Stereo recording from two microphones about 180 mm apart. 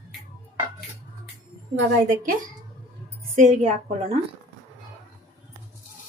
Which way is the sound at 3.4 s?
40° right (ahead or behind).